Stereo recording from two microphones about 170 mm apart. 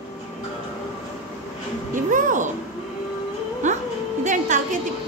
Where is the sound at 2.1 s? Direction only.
50° right (ahead or behind).